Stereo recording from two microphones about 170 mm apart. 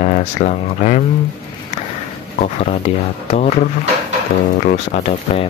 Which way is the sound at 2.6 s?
40° left (ahead or behind).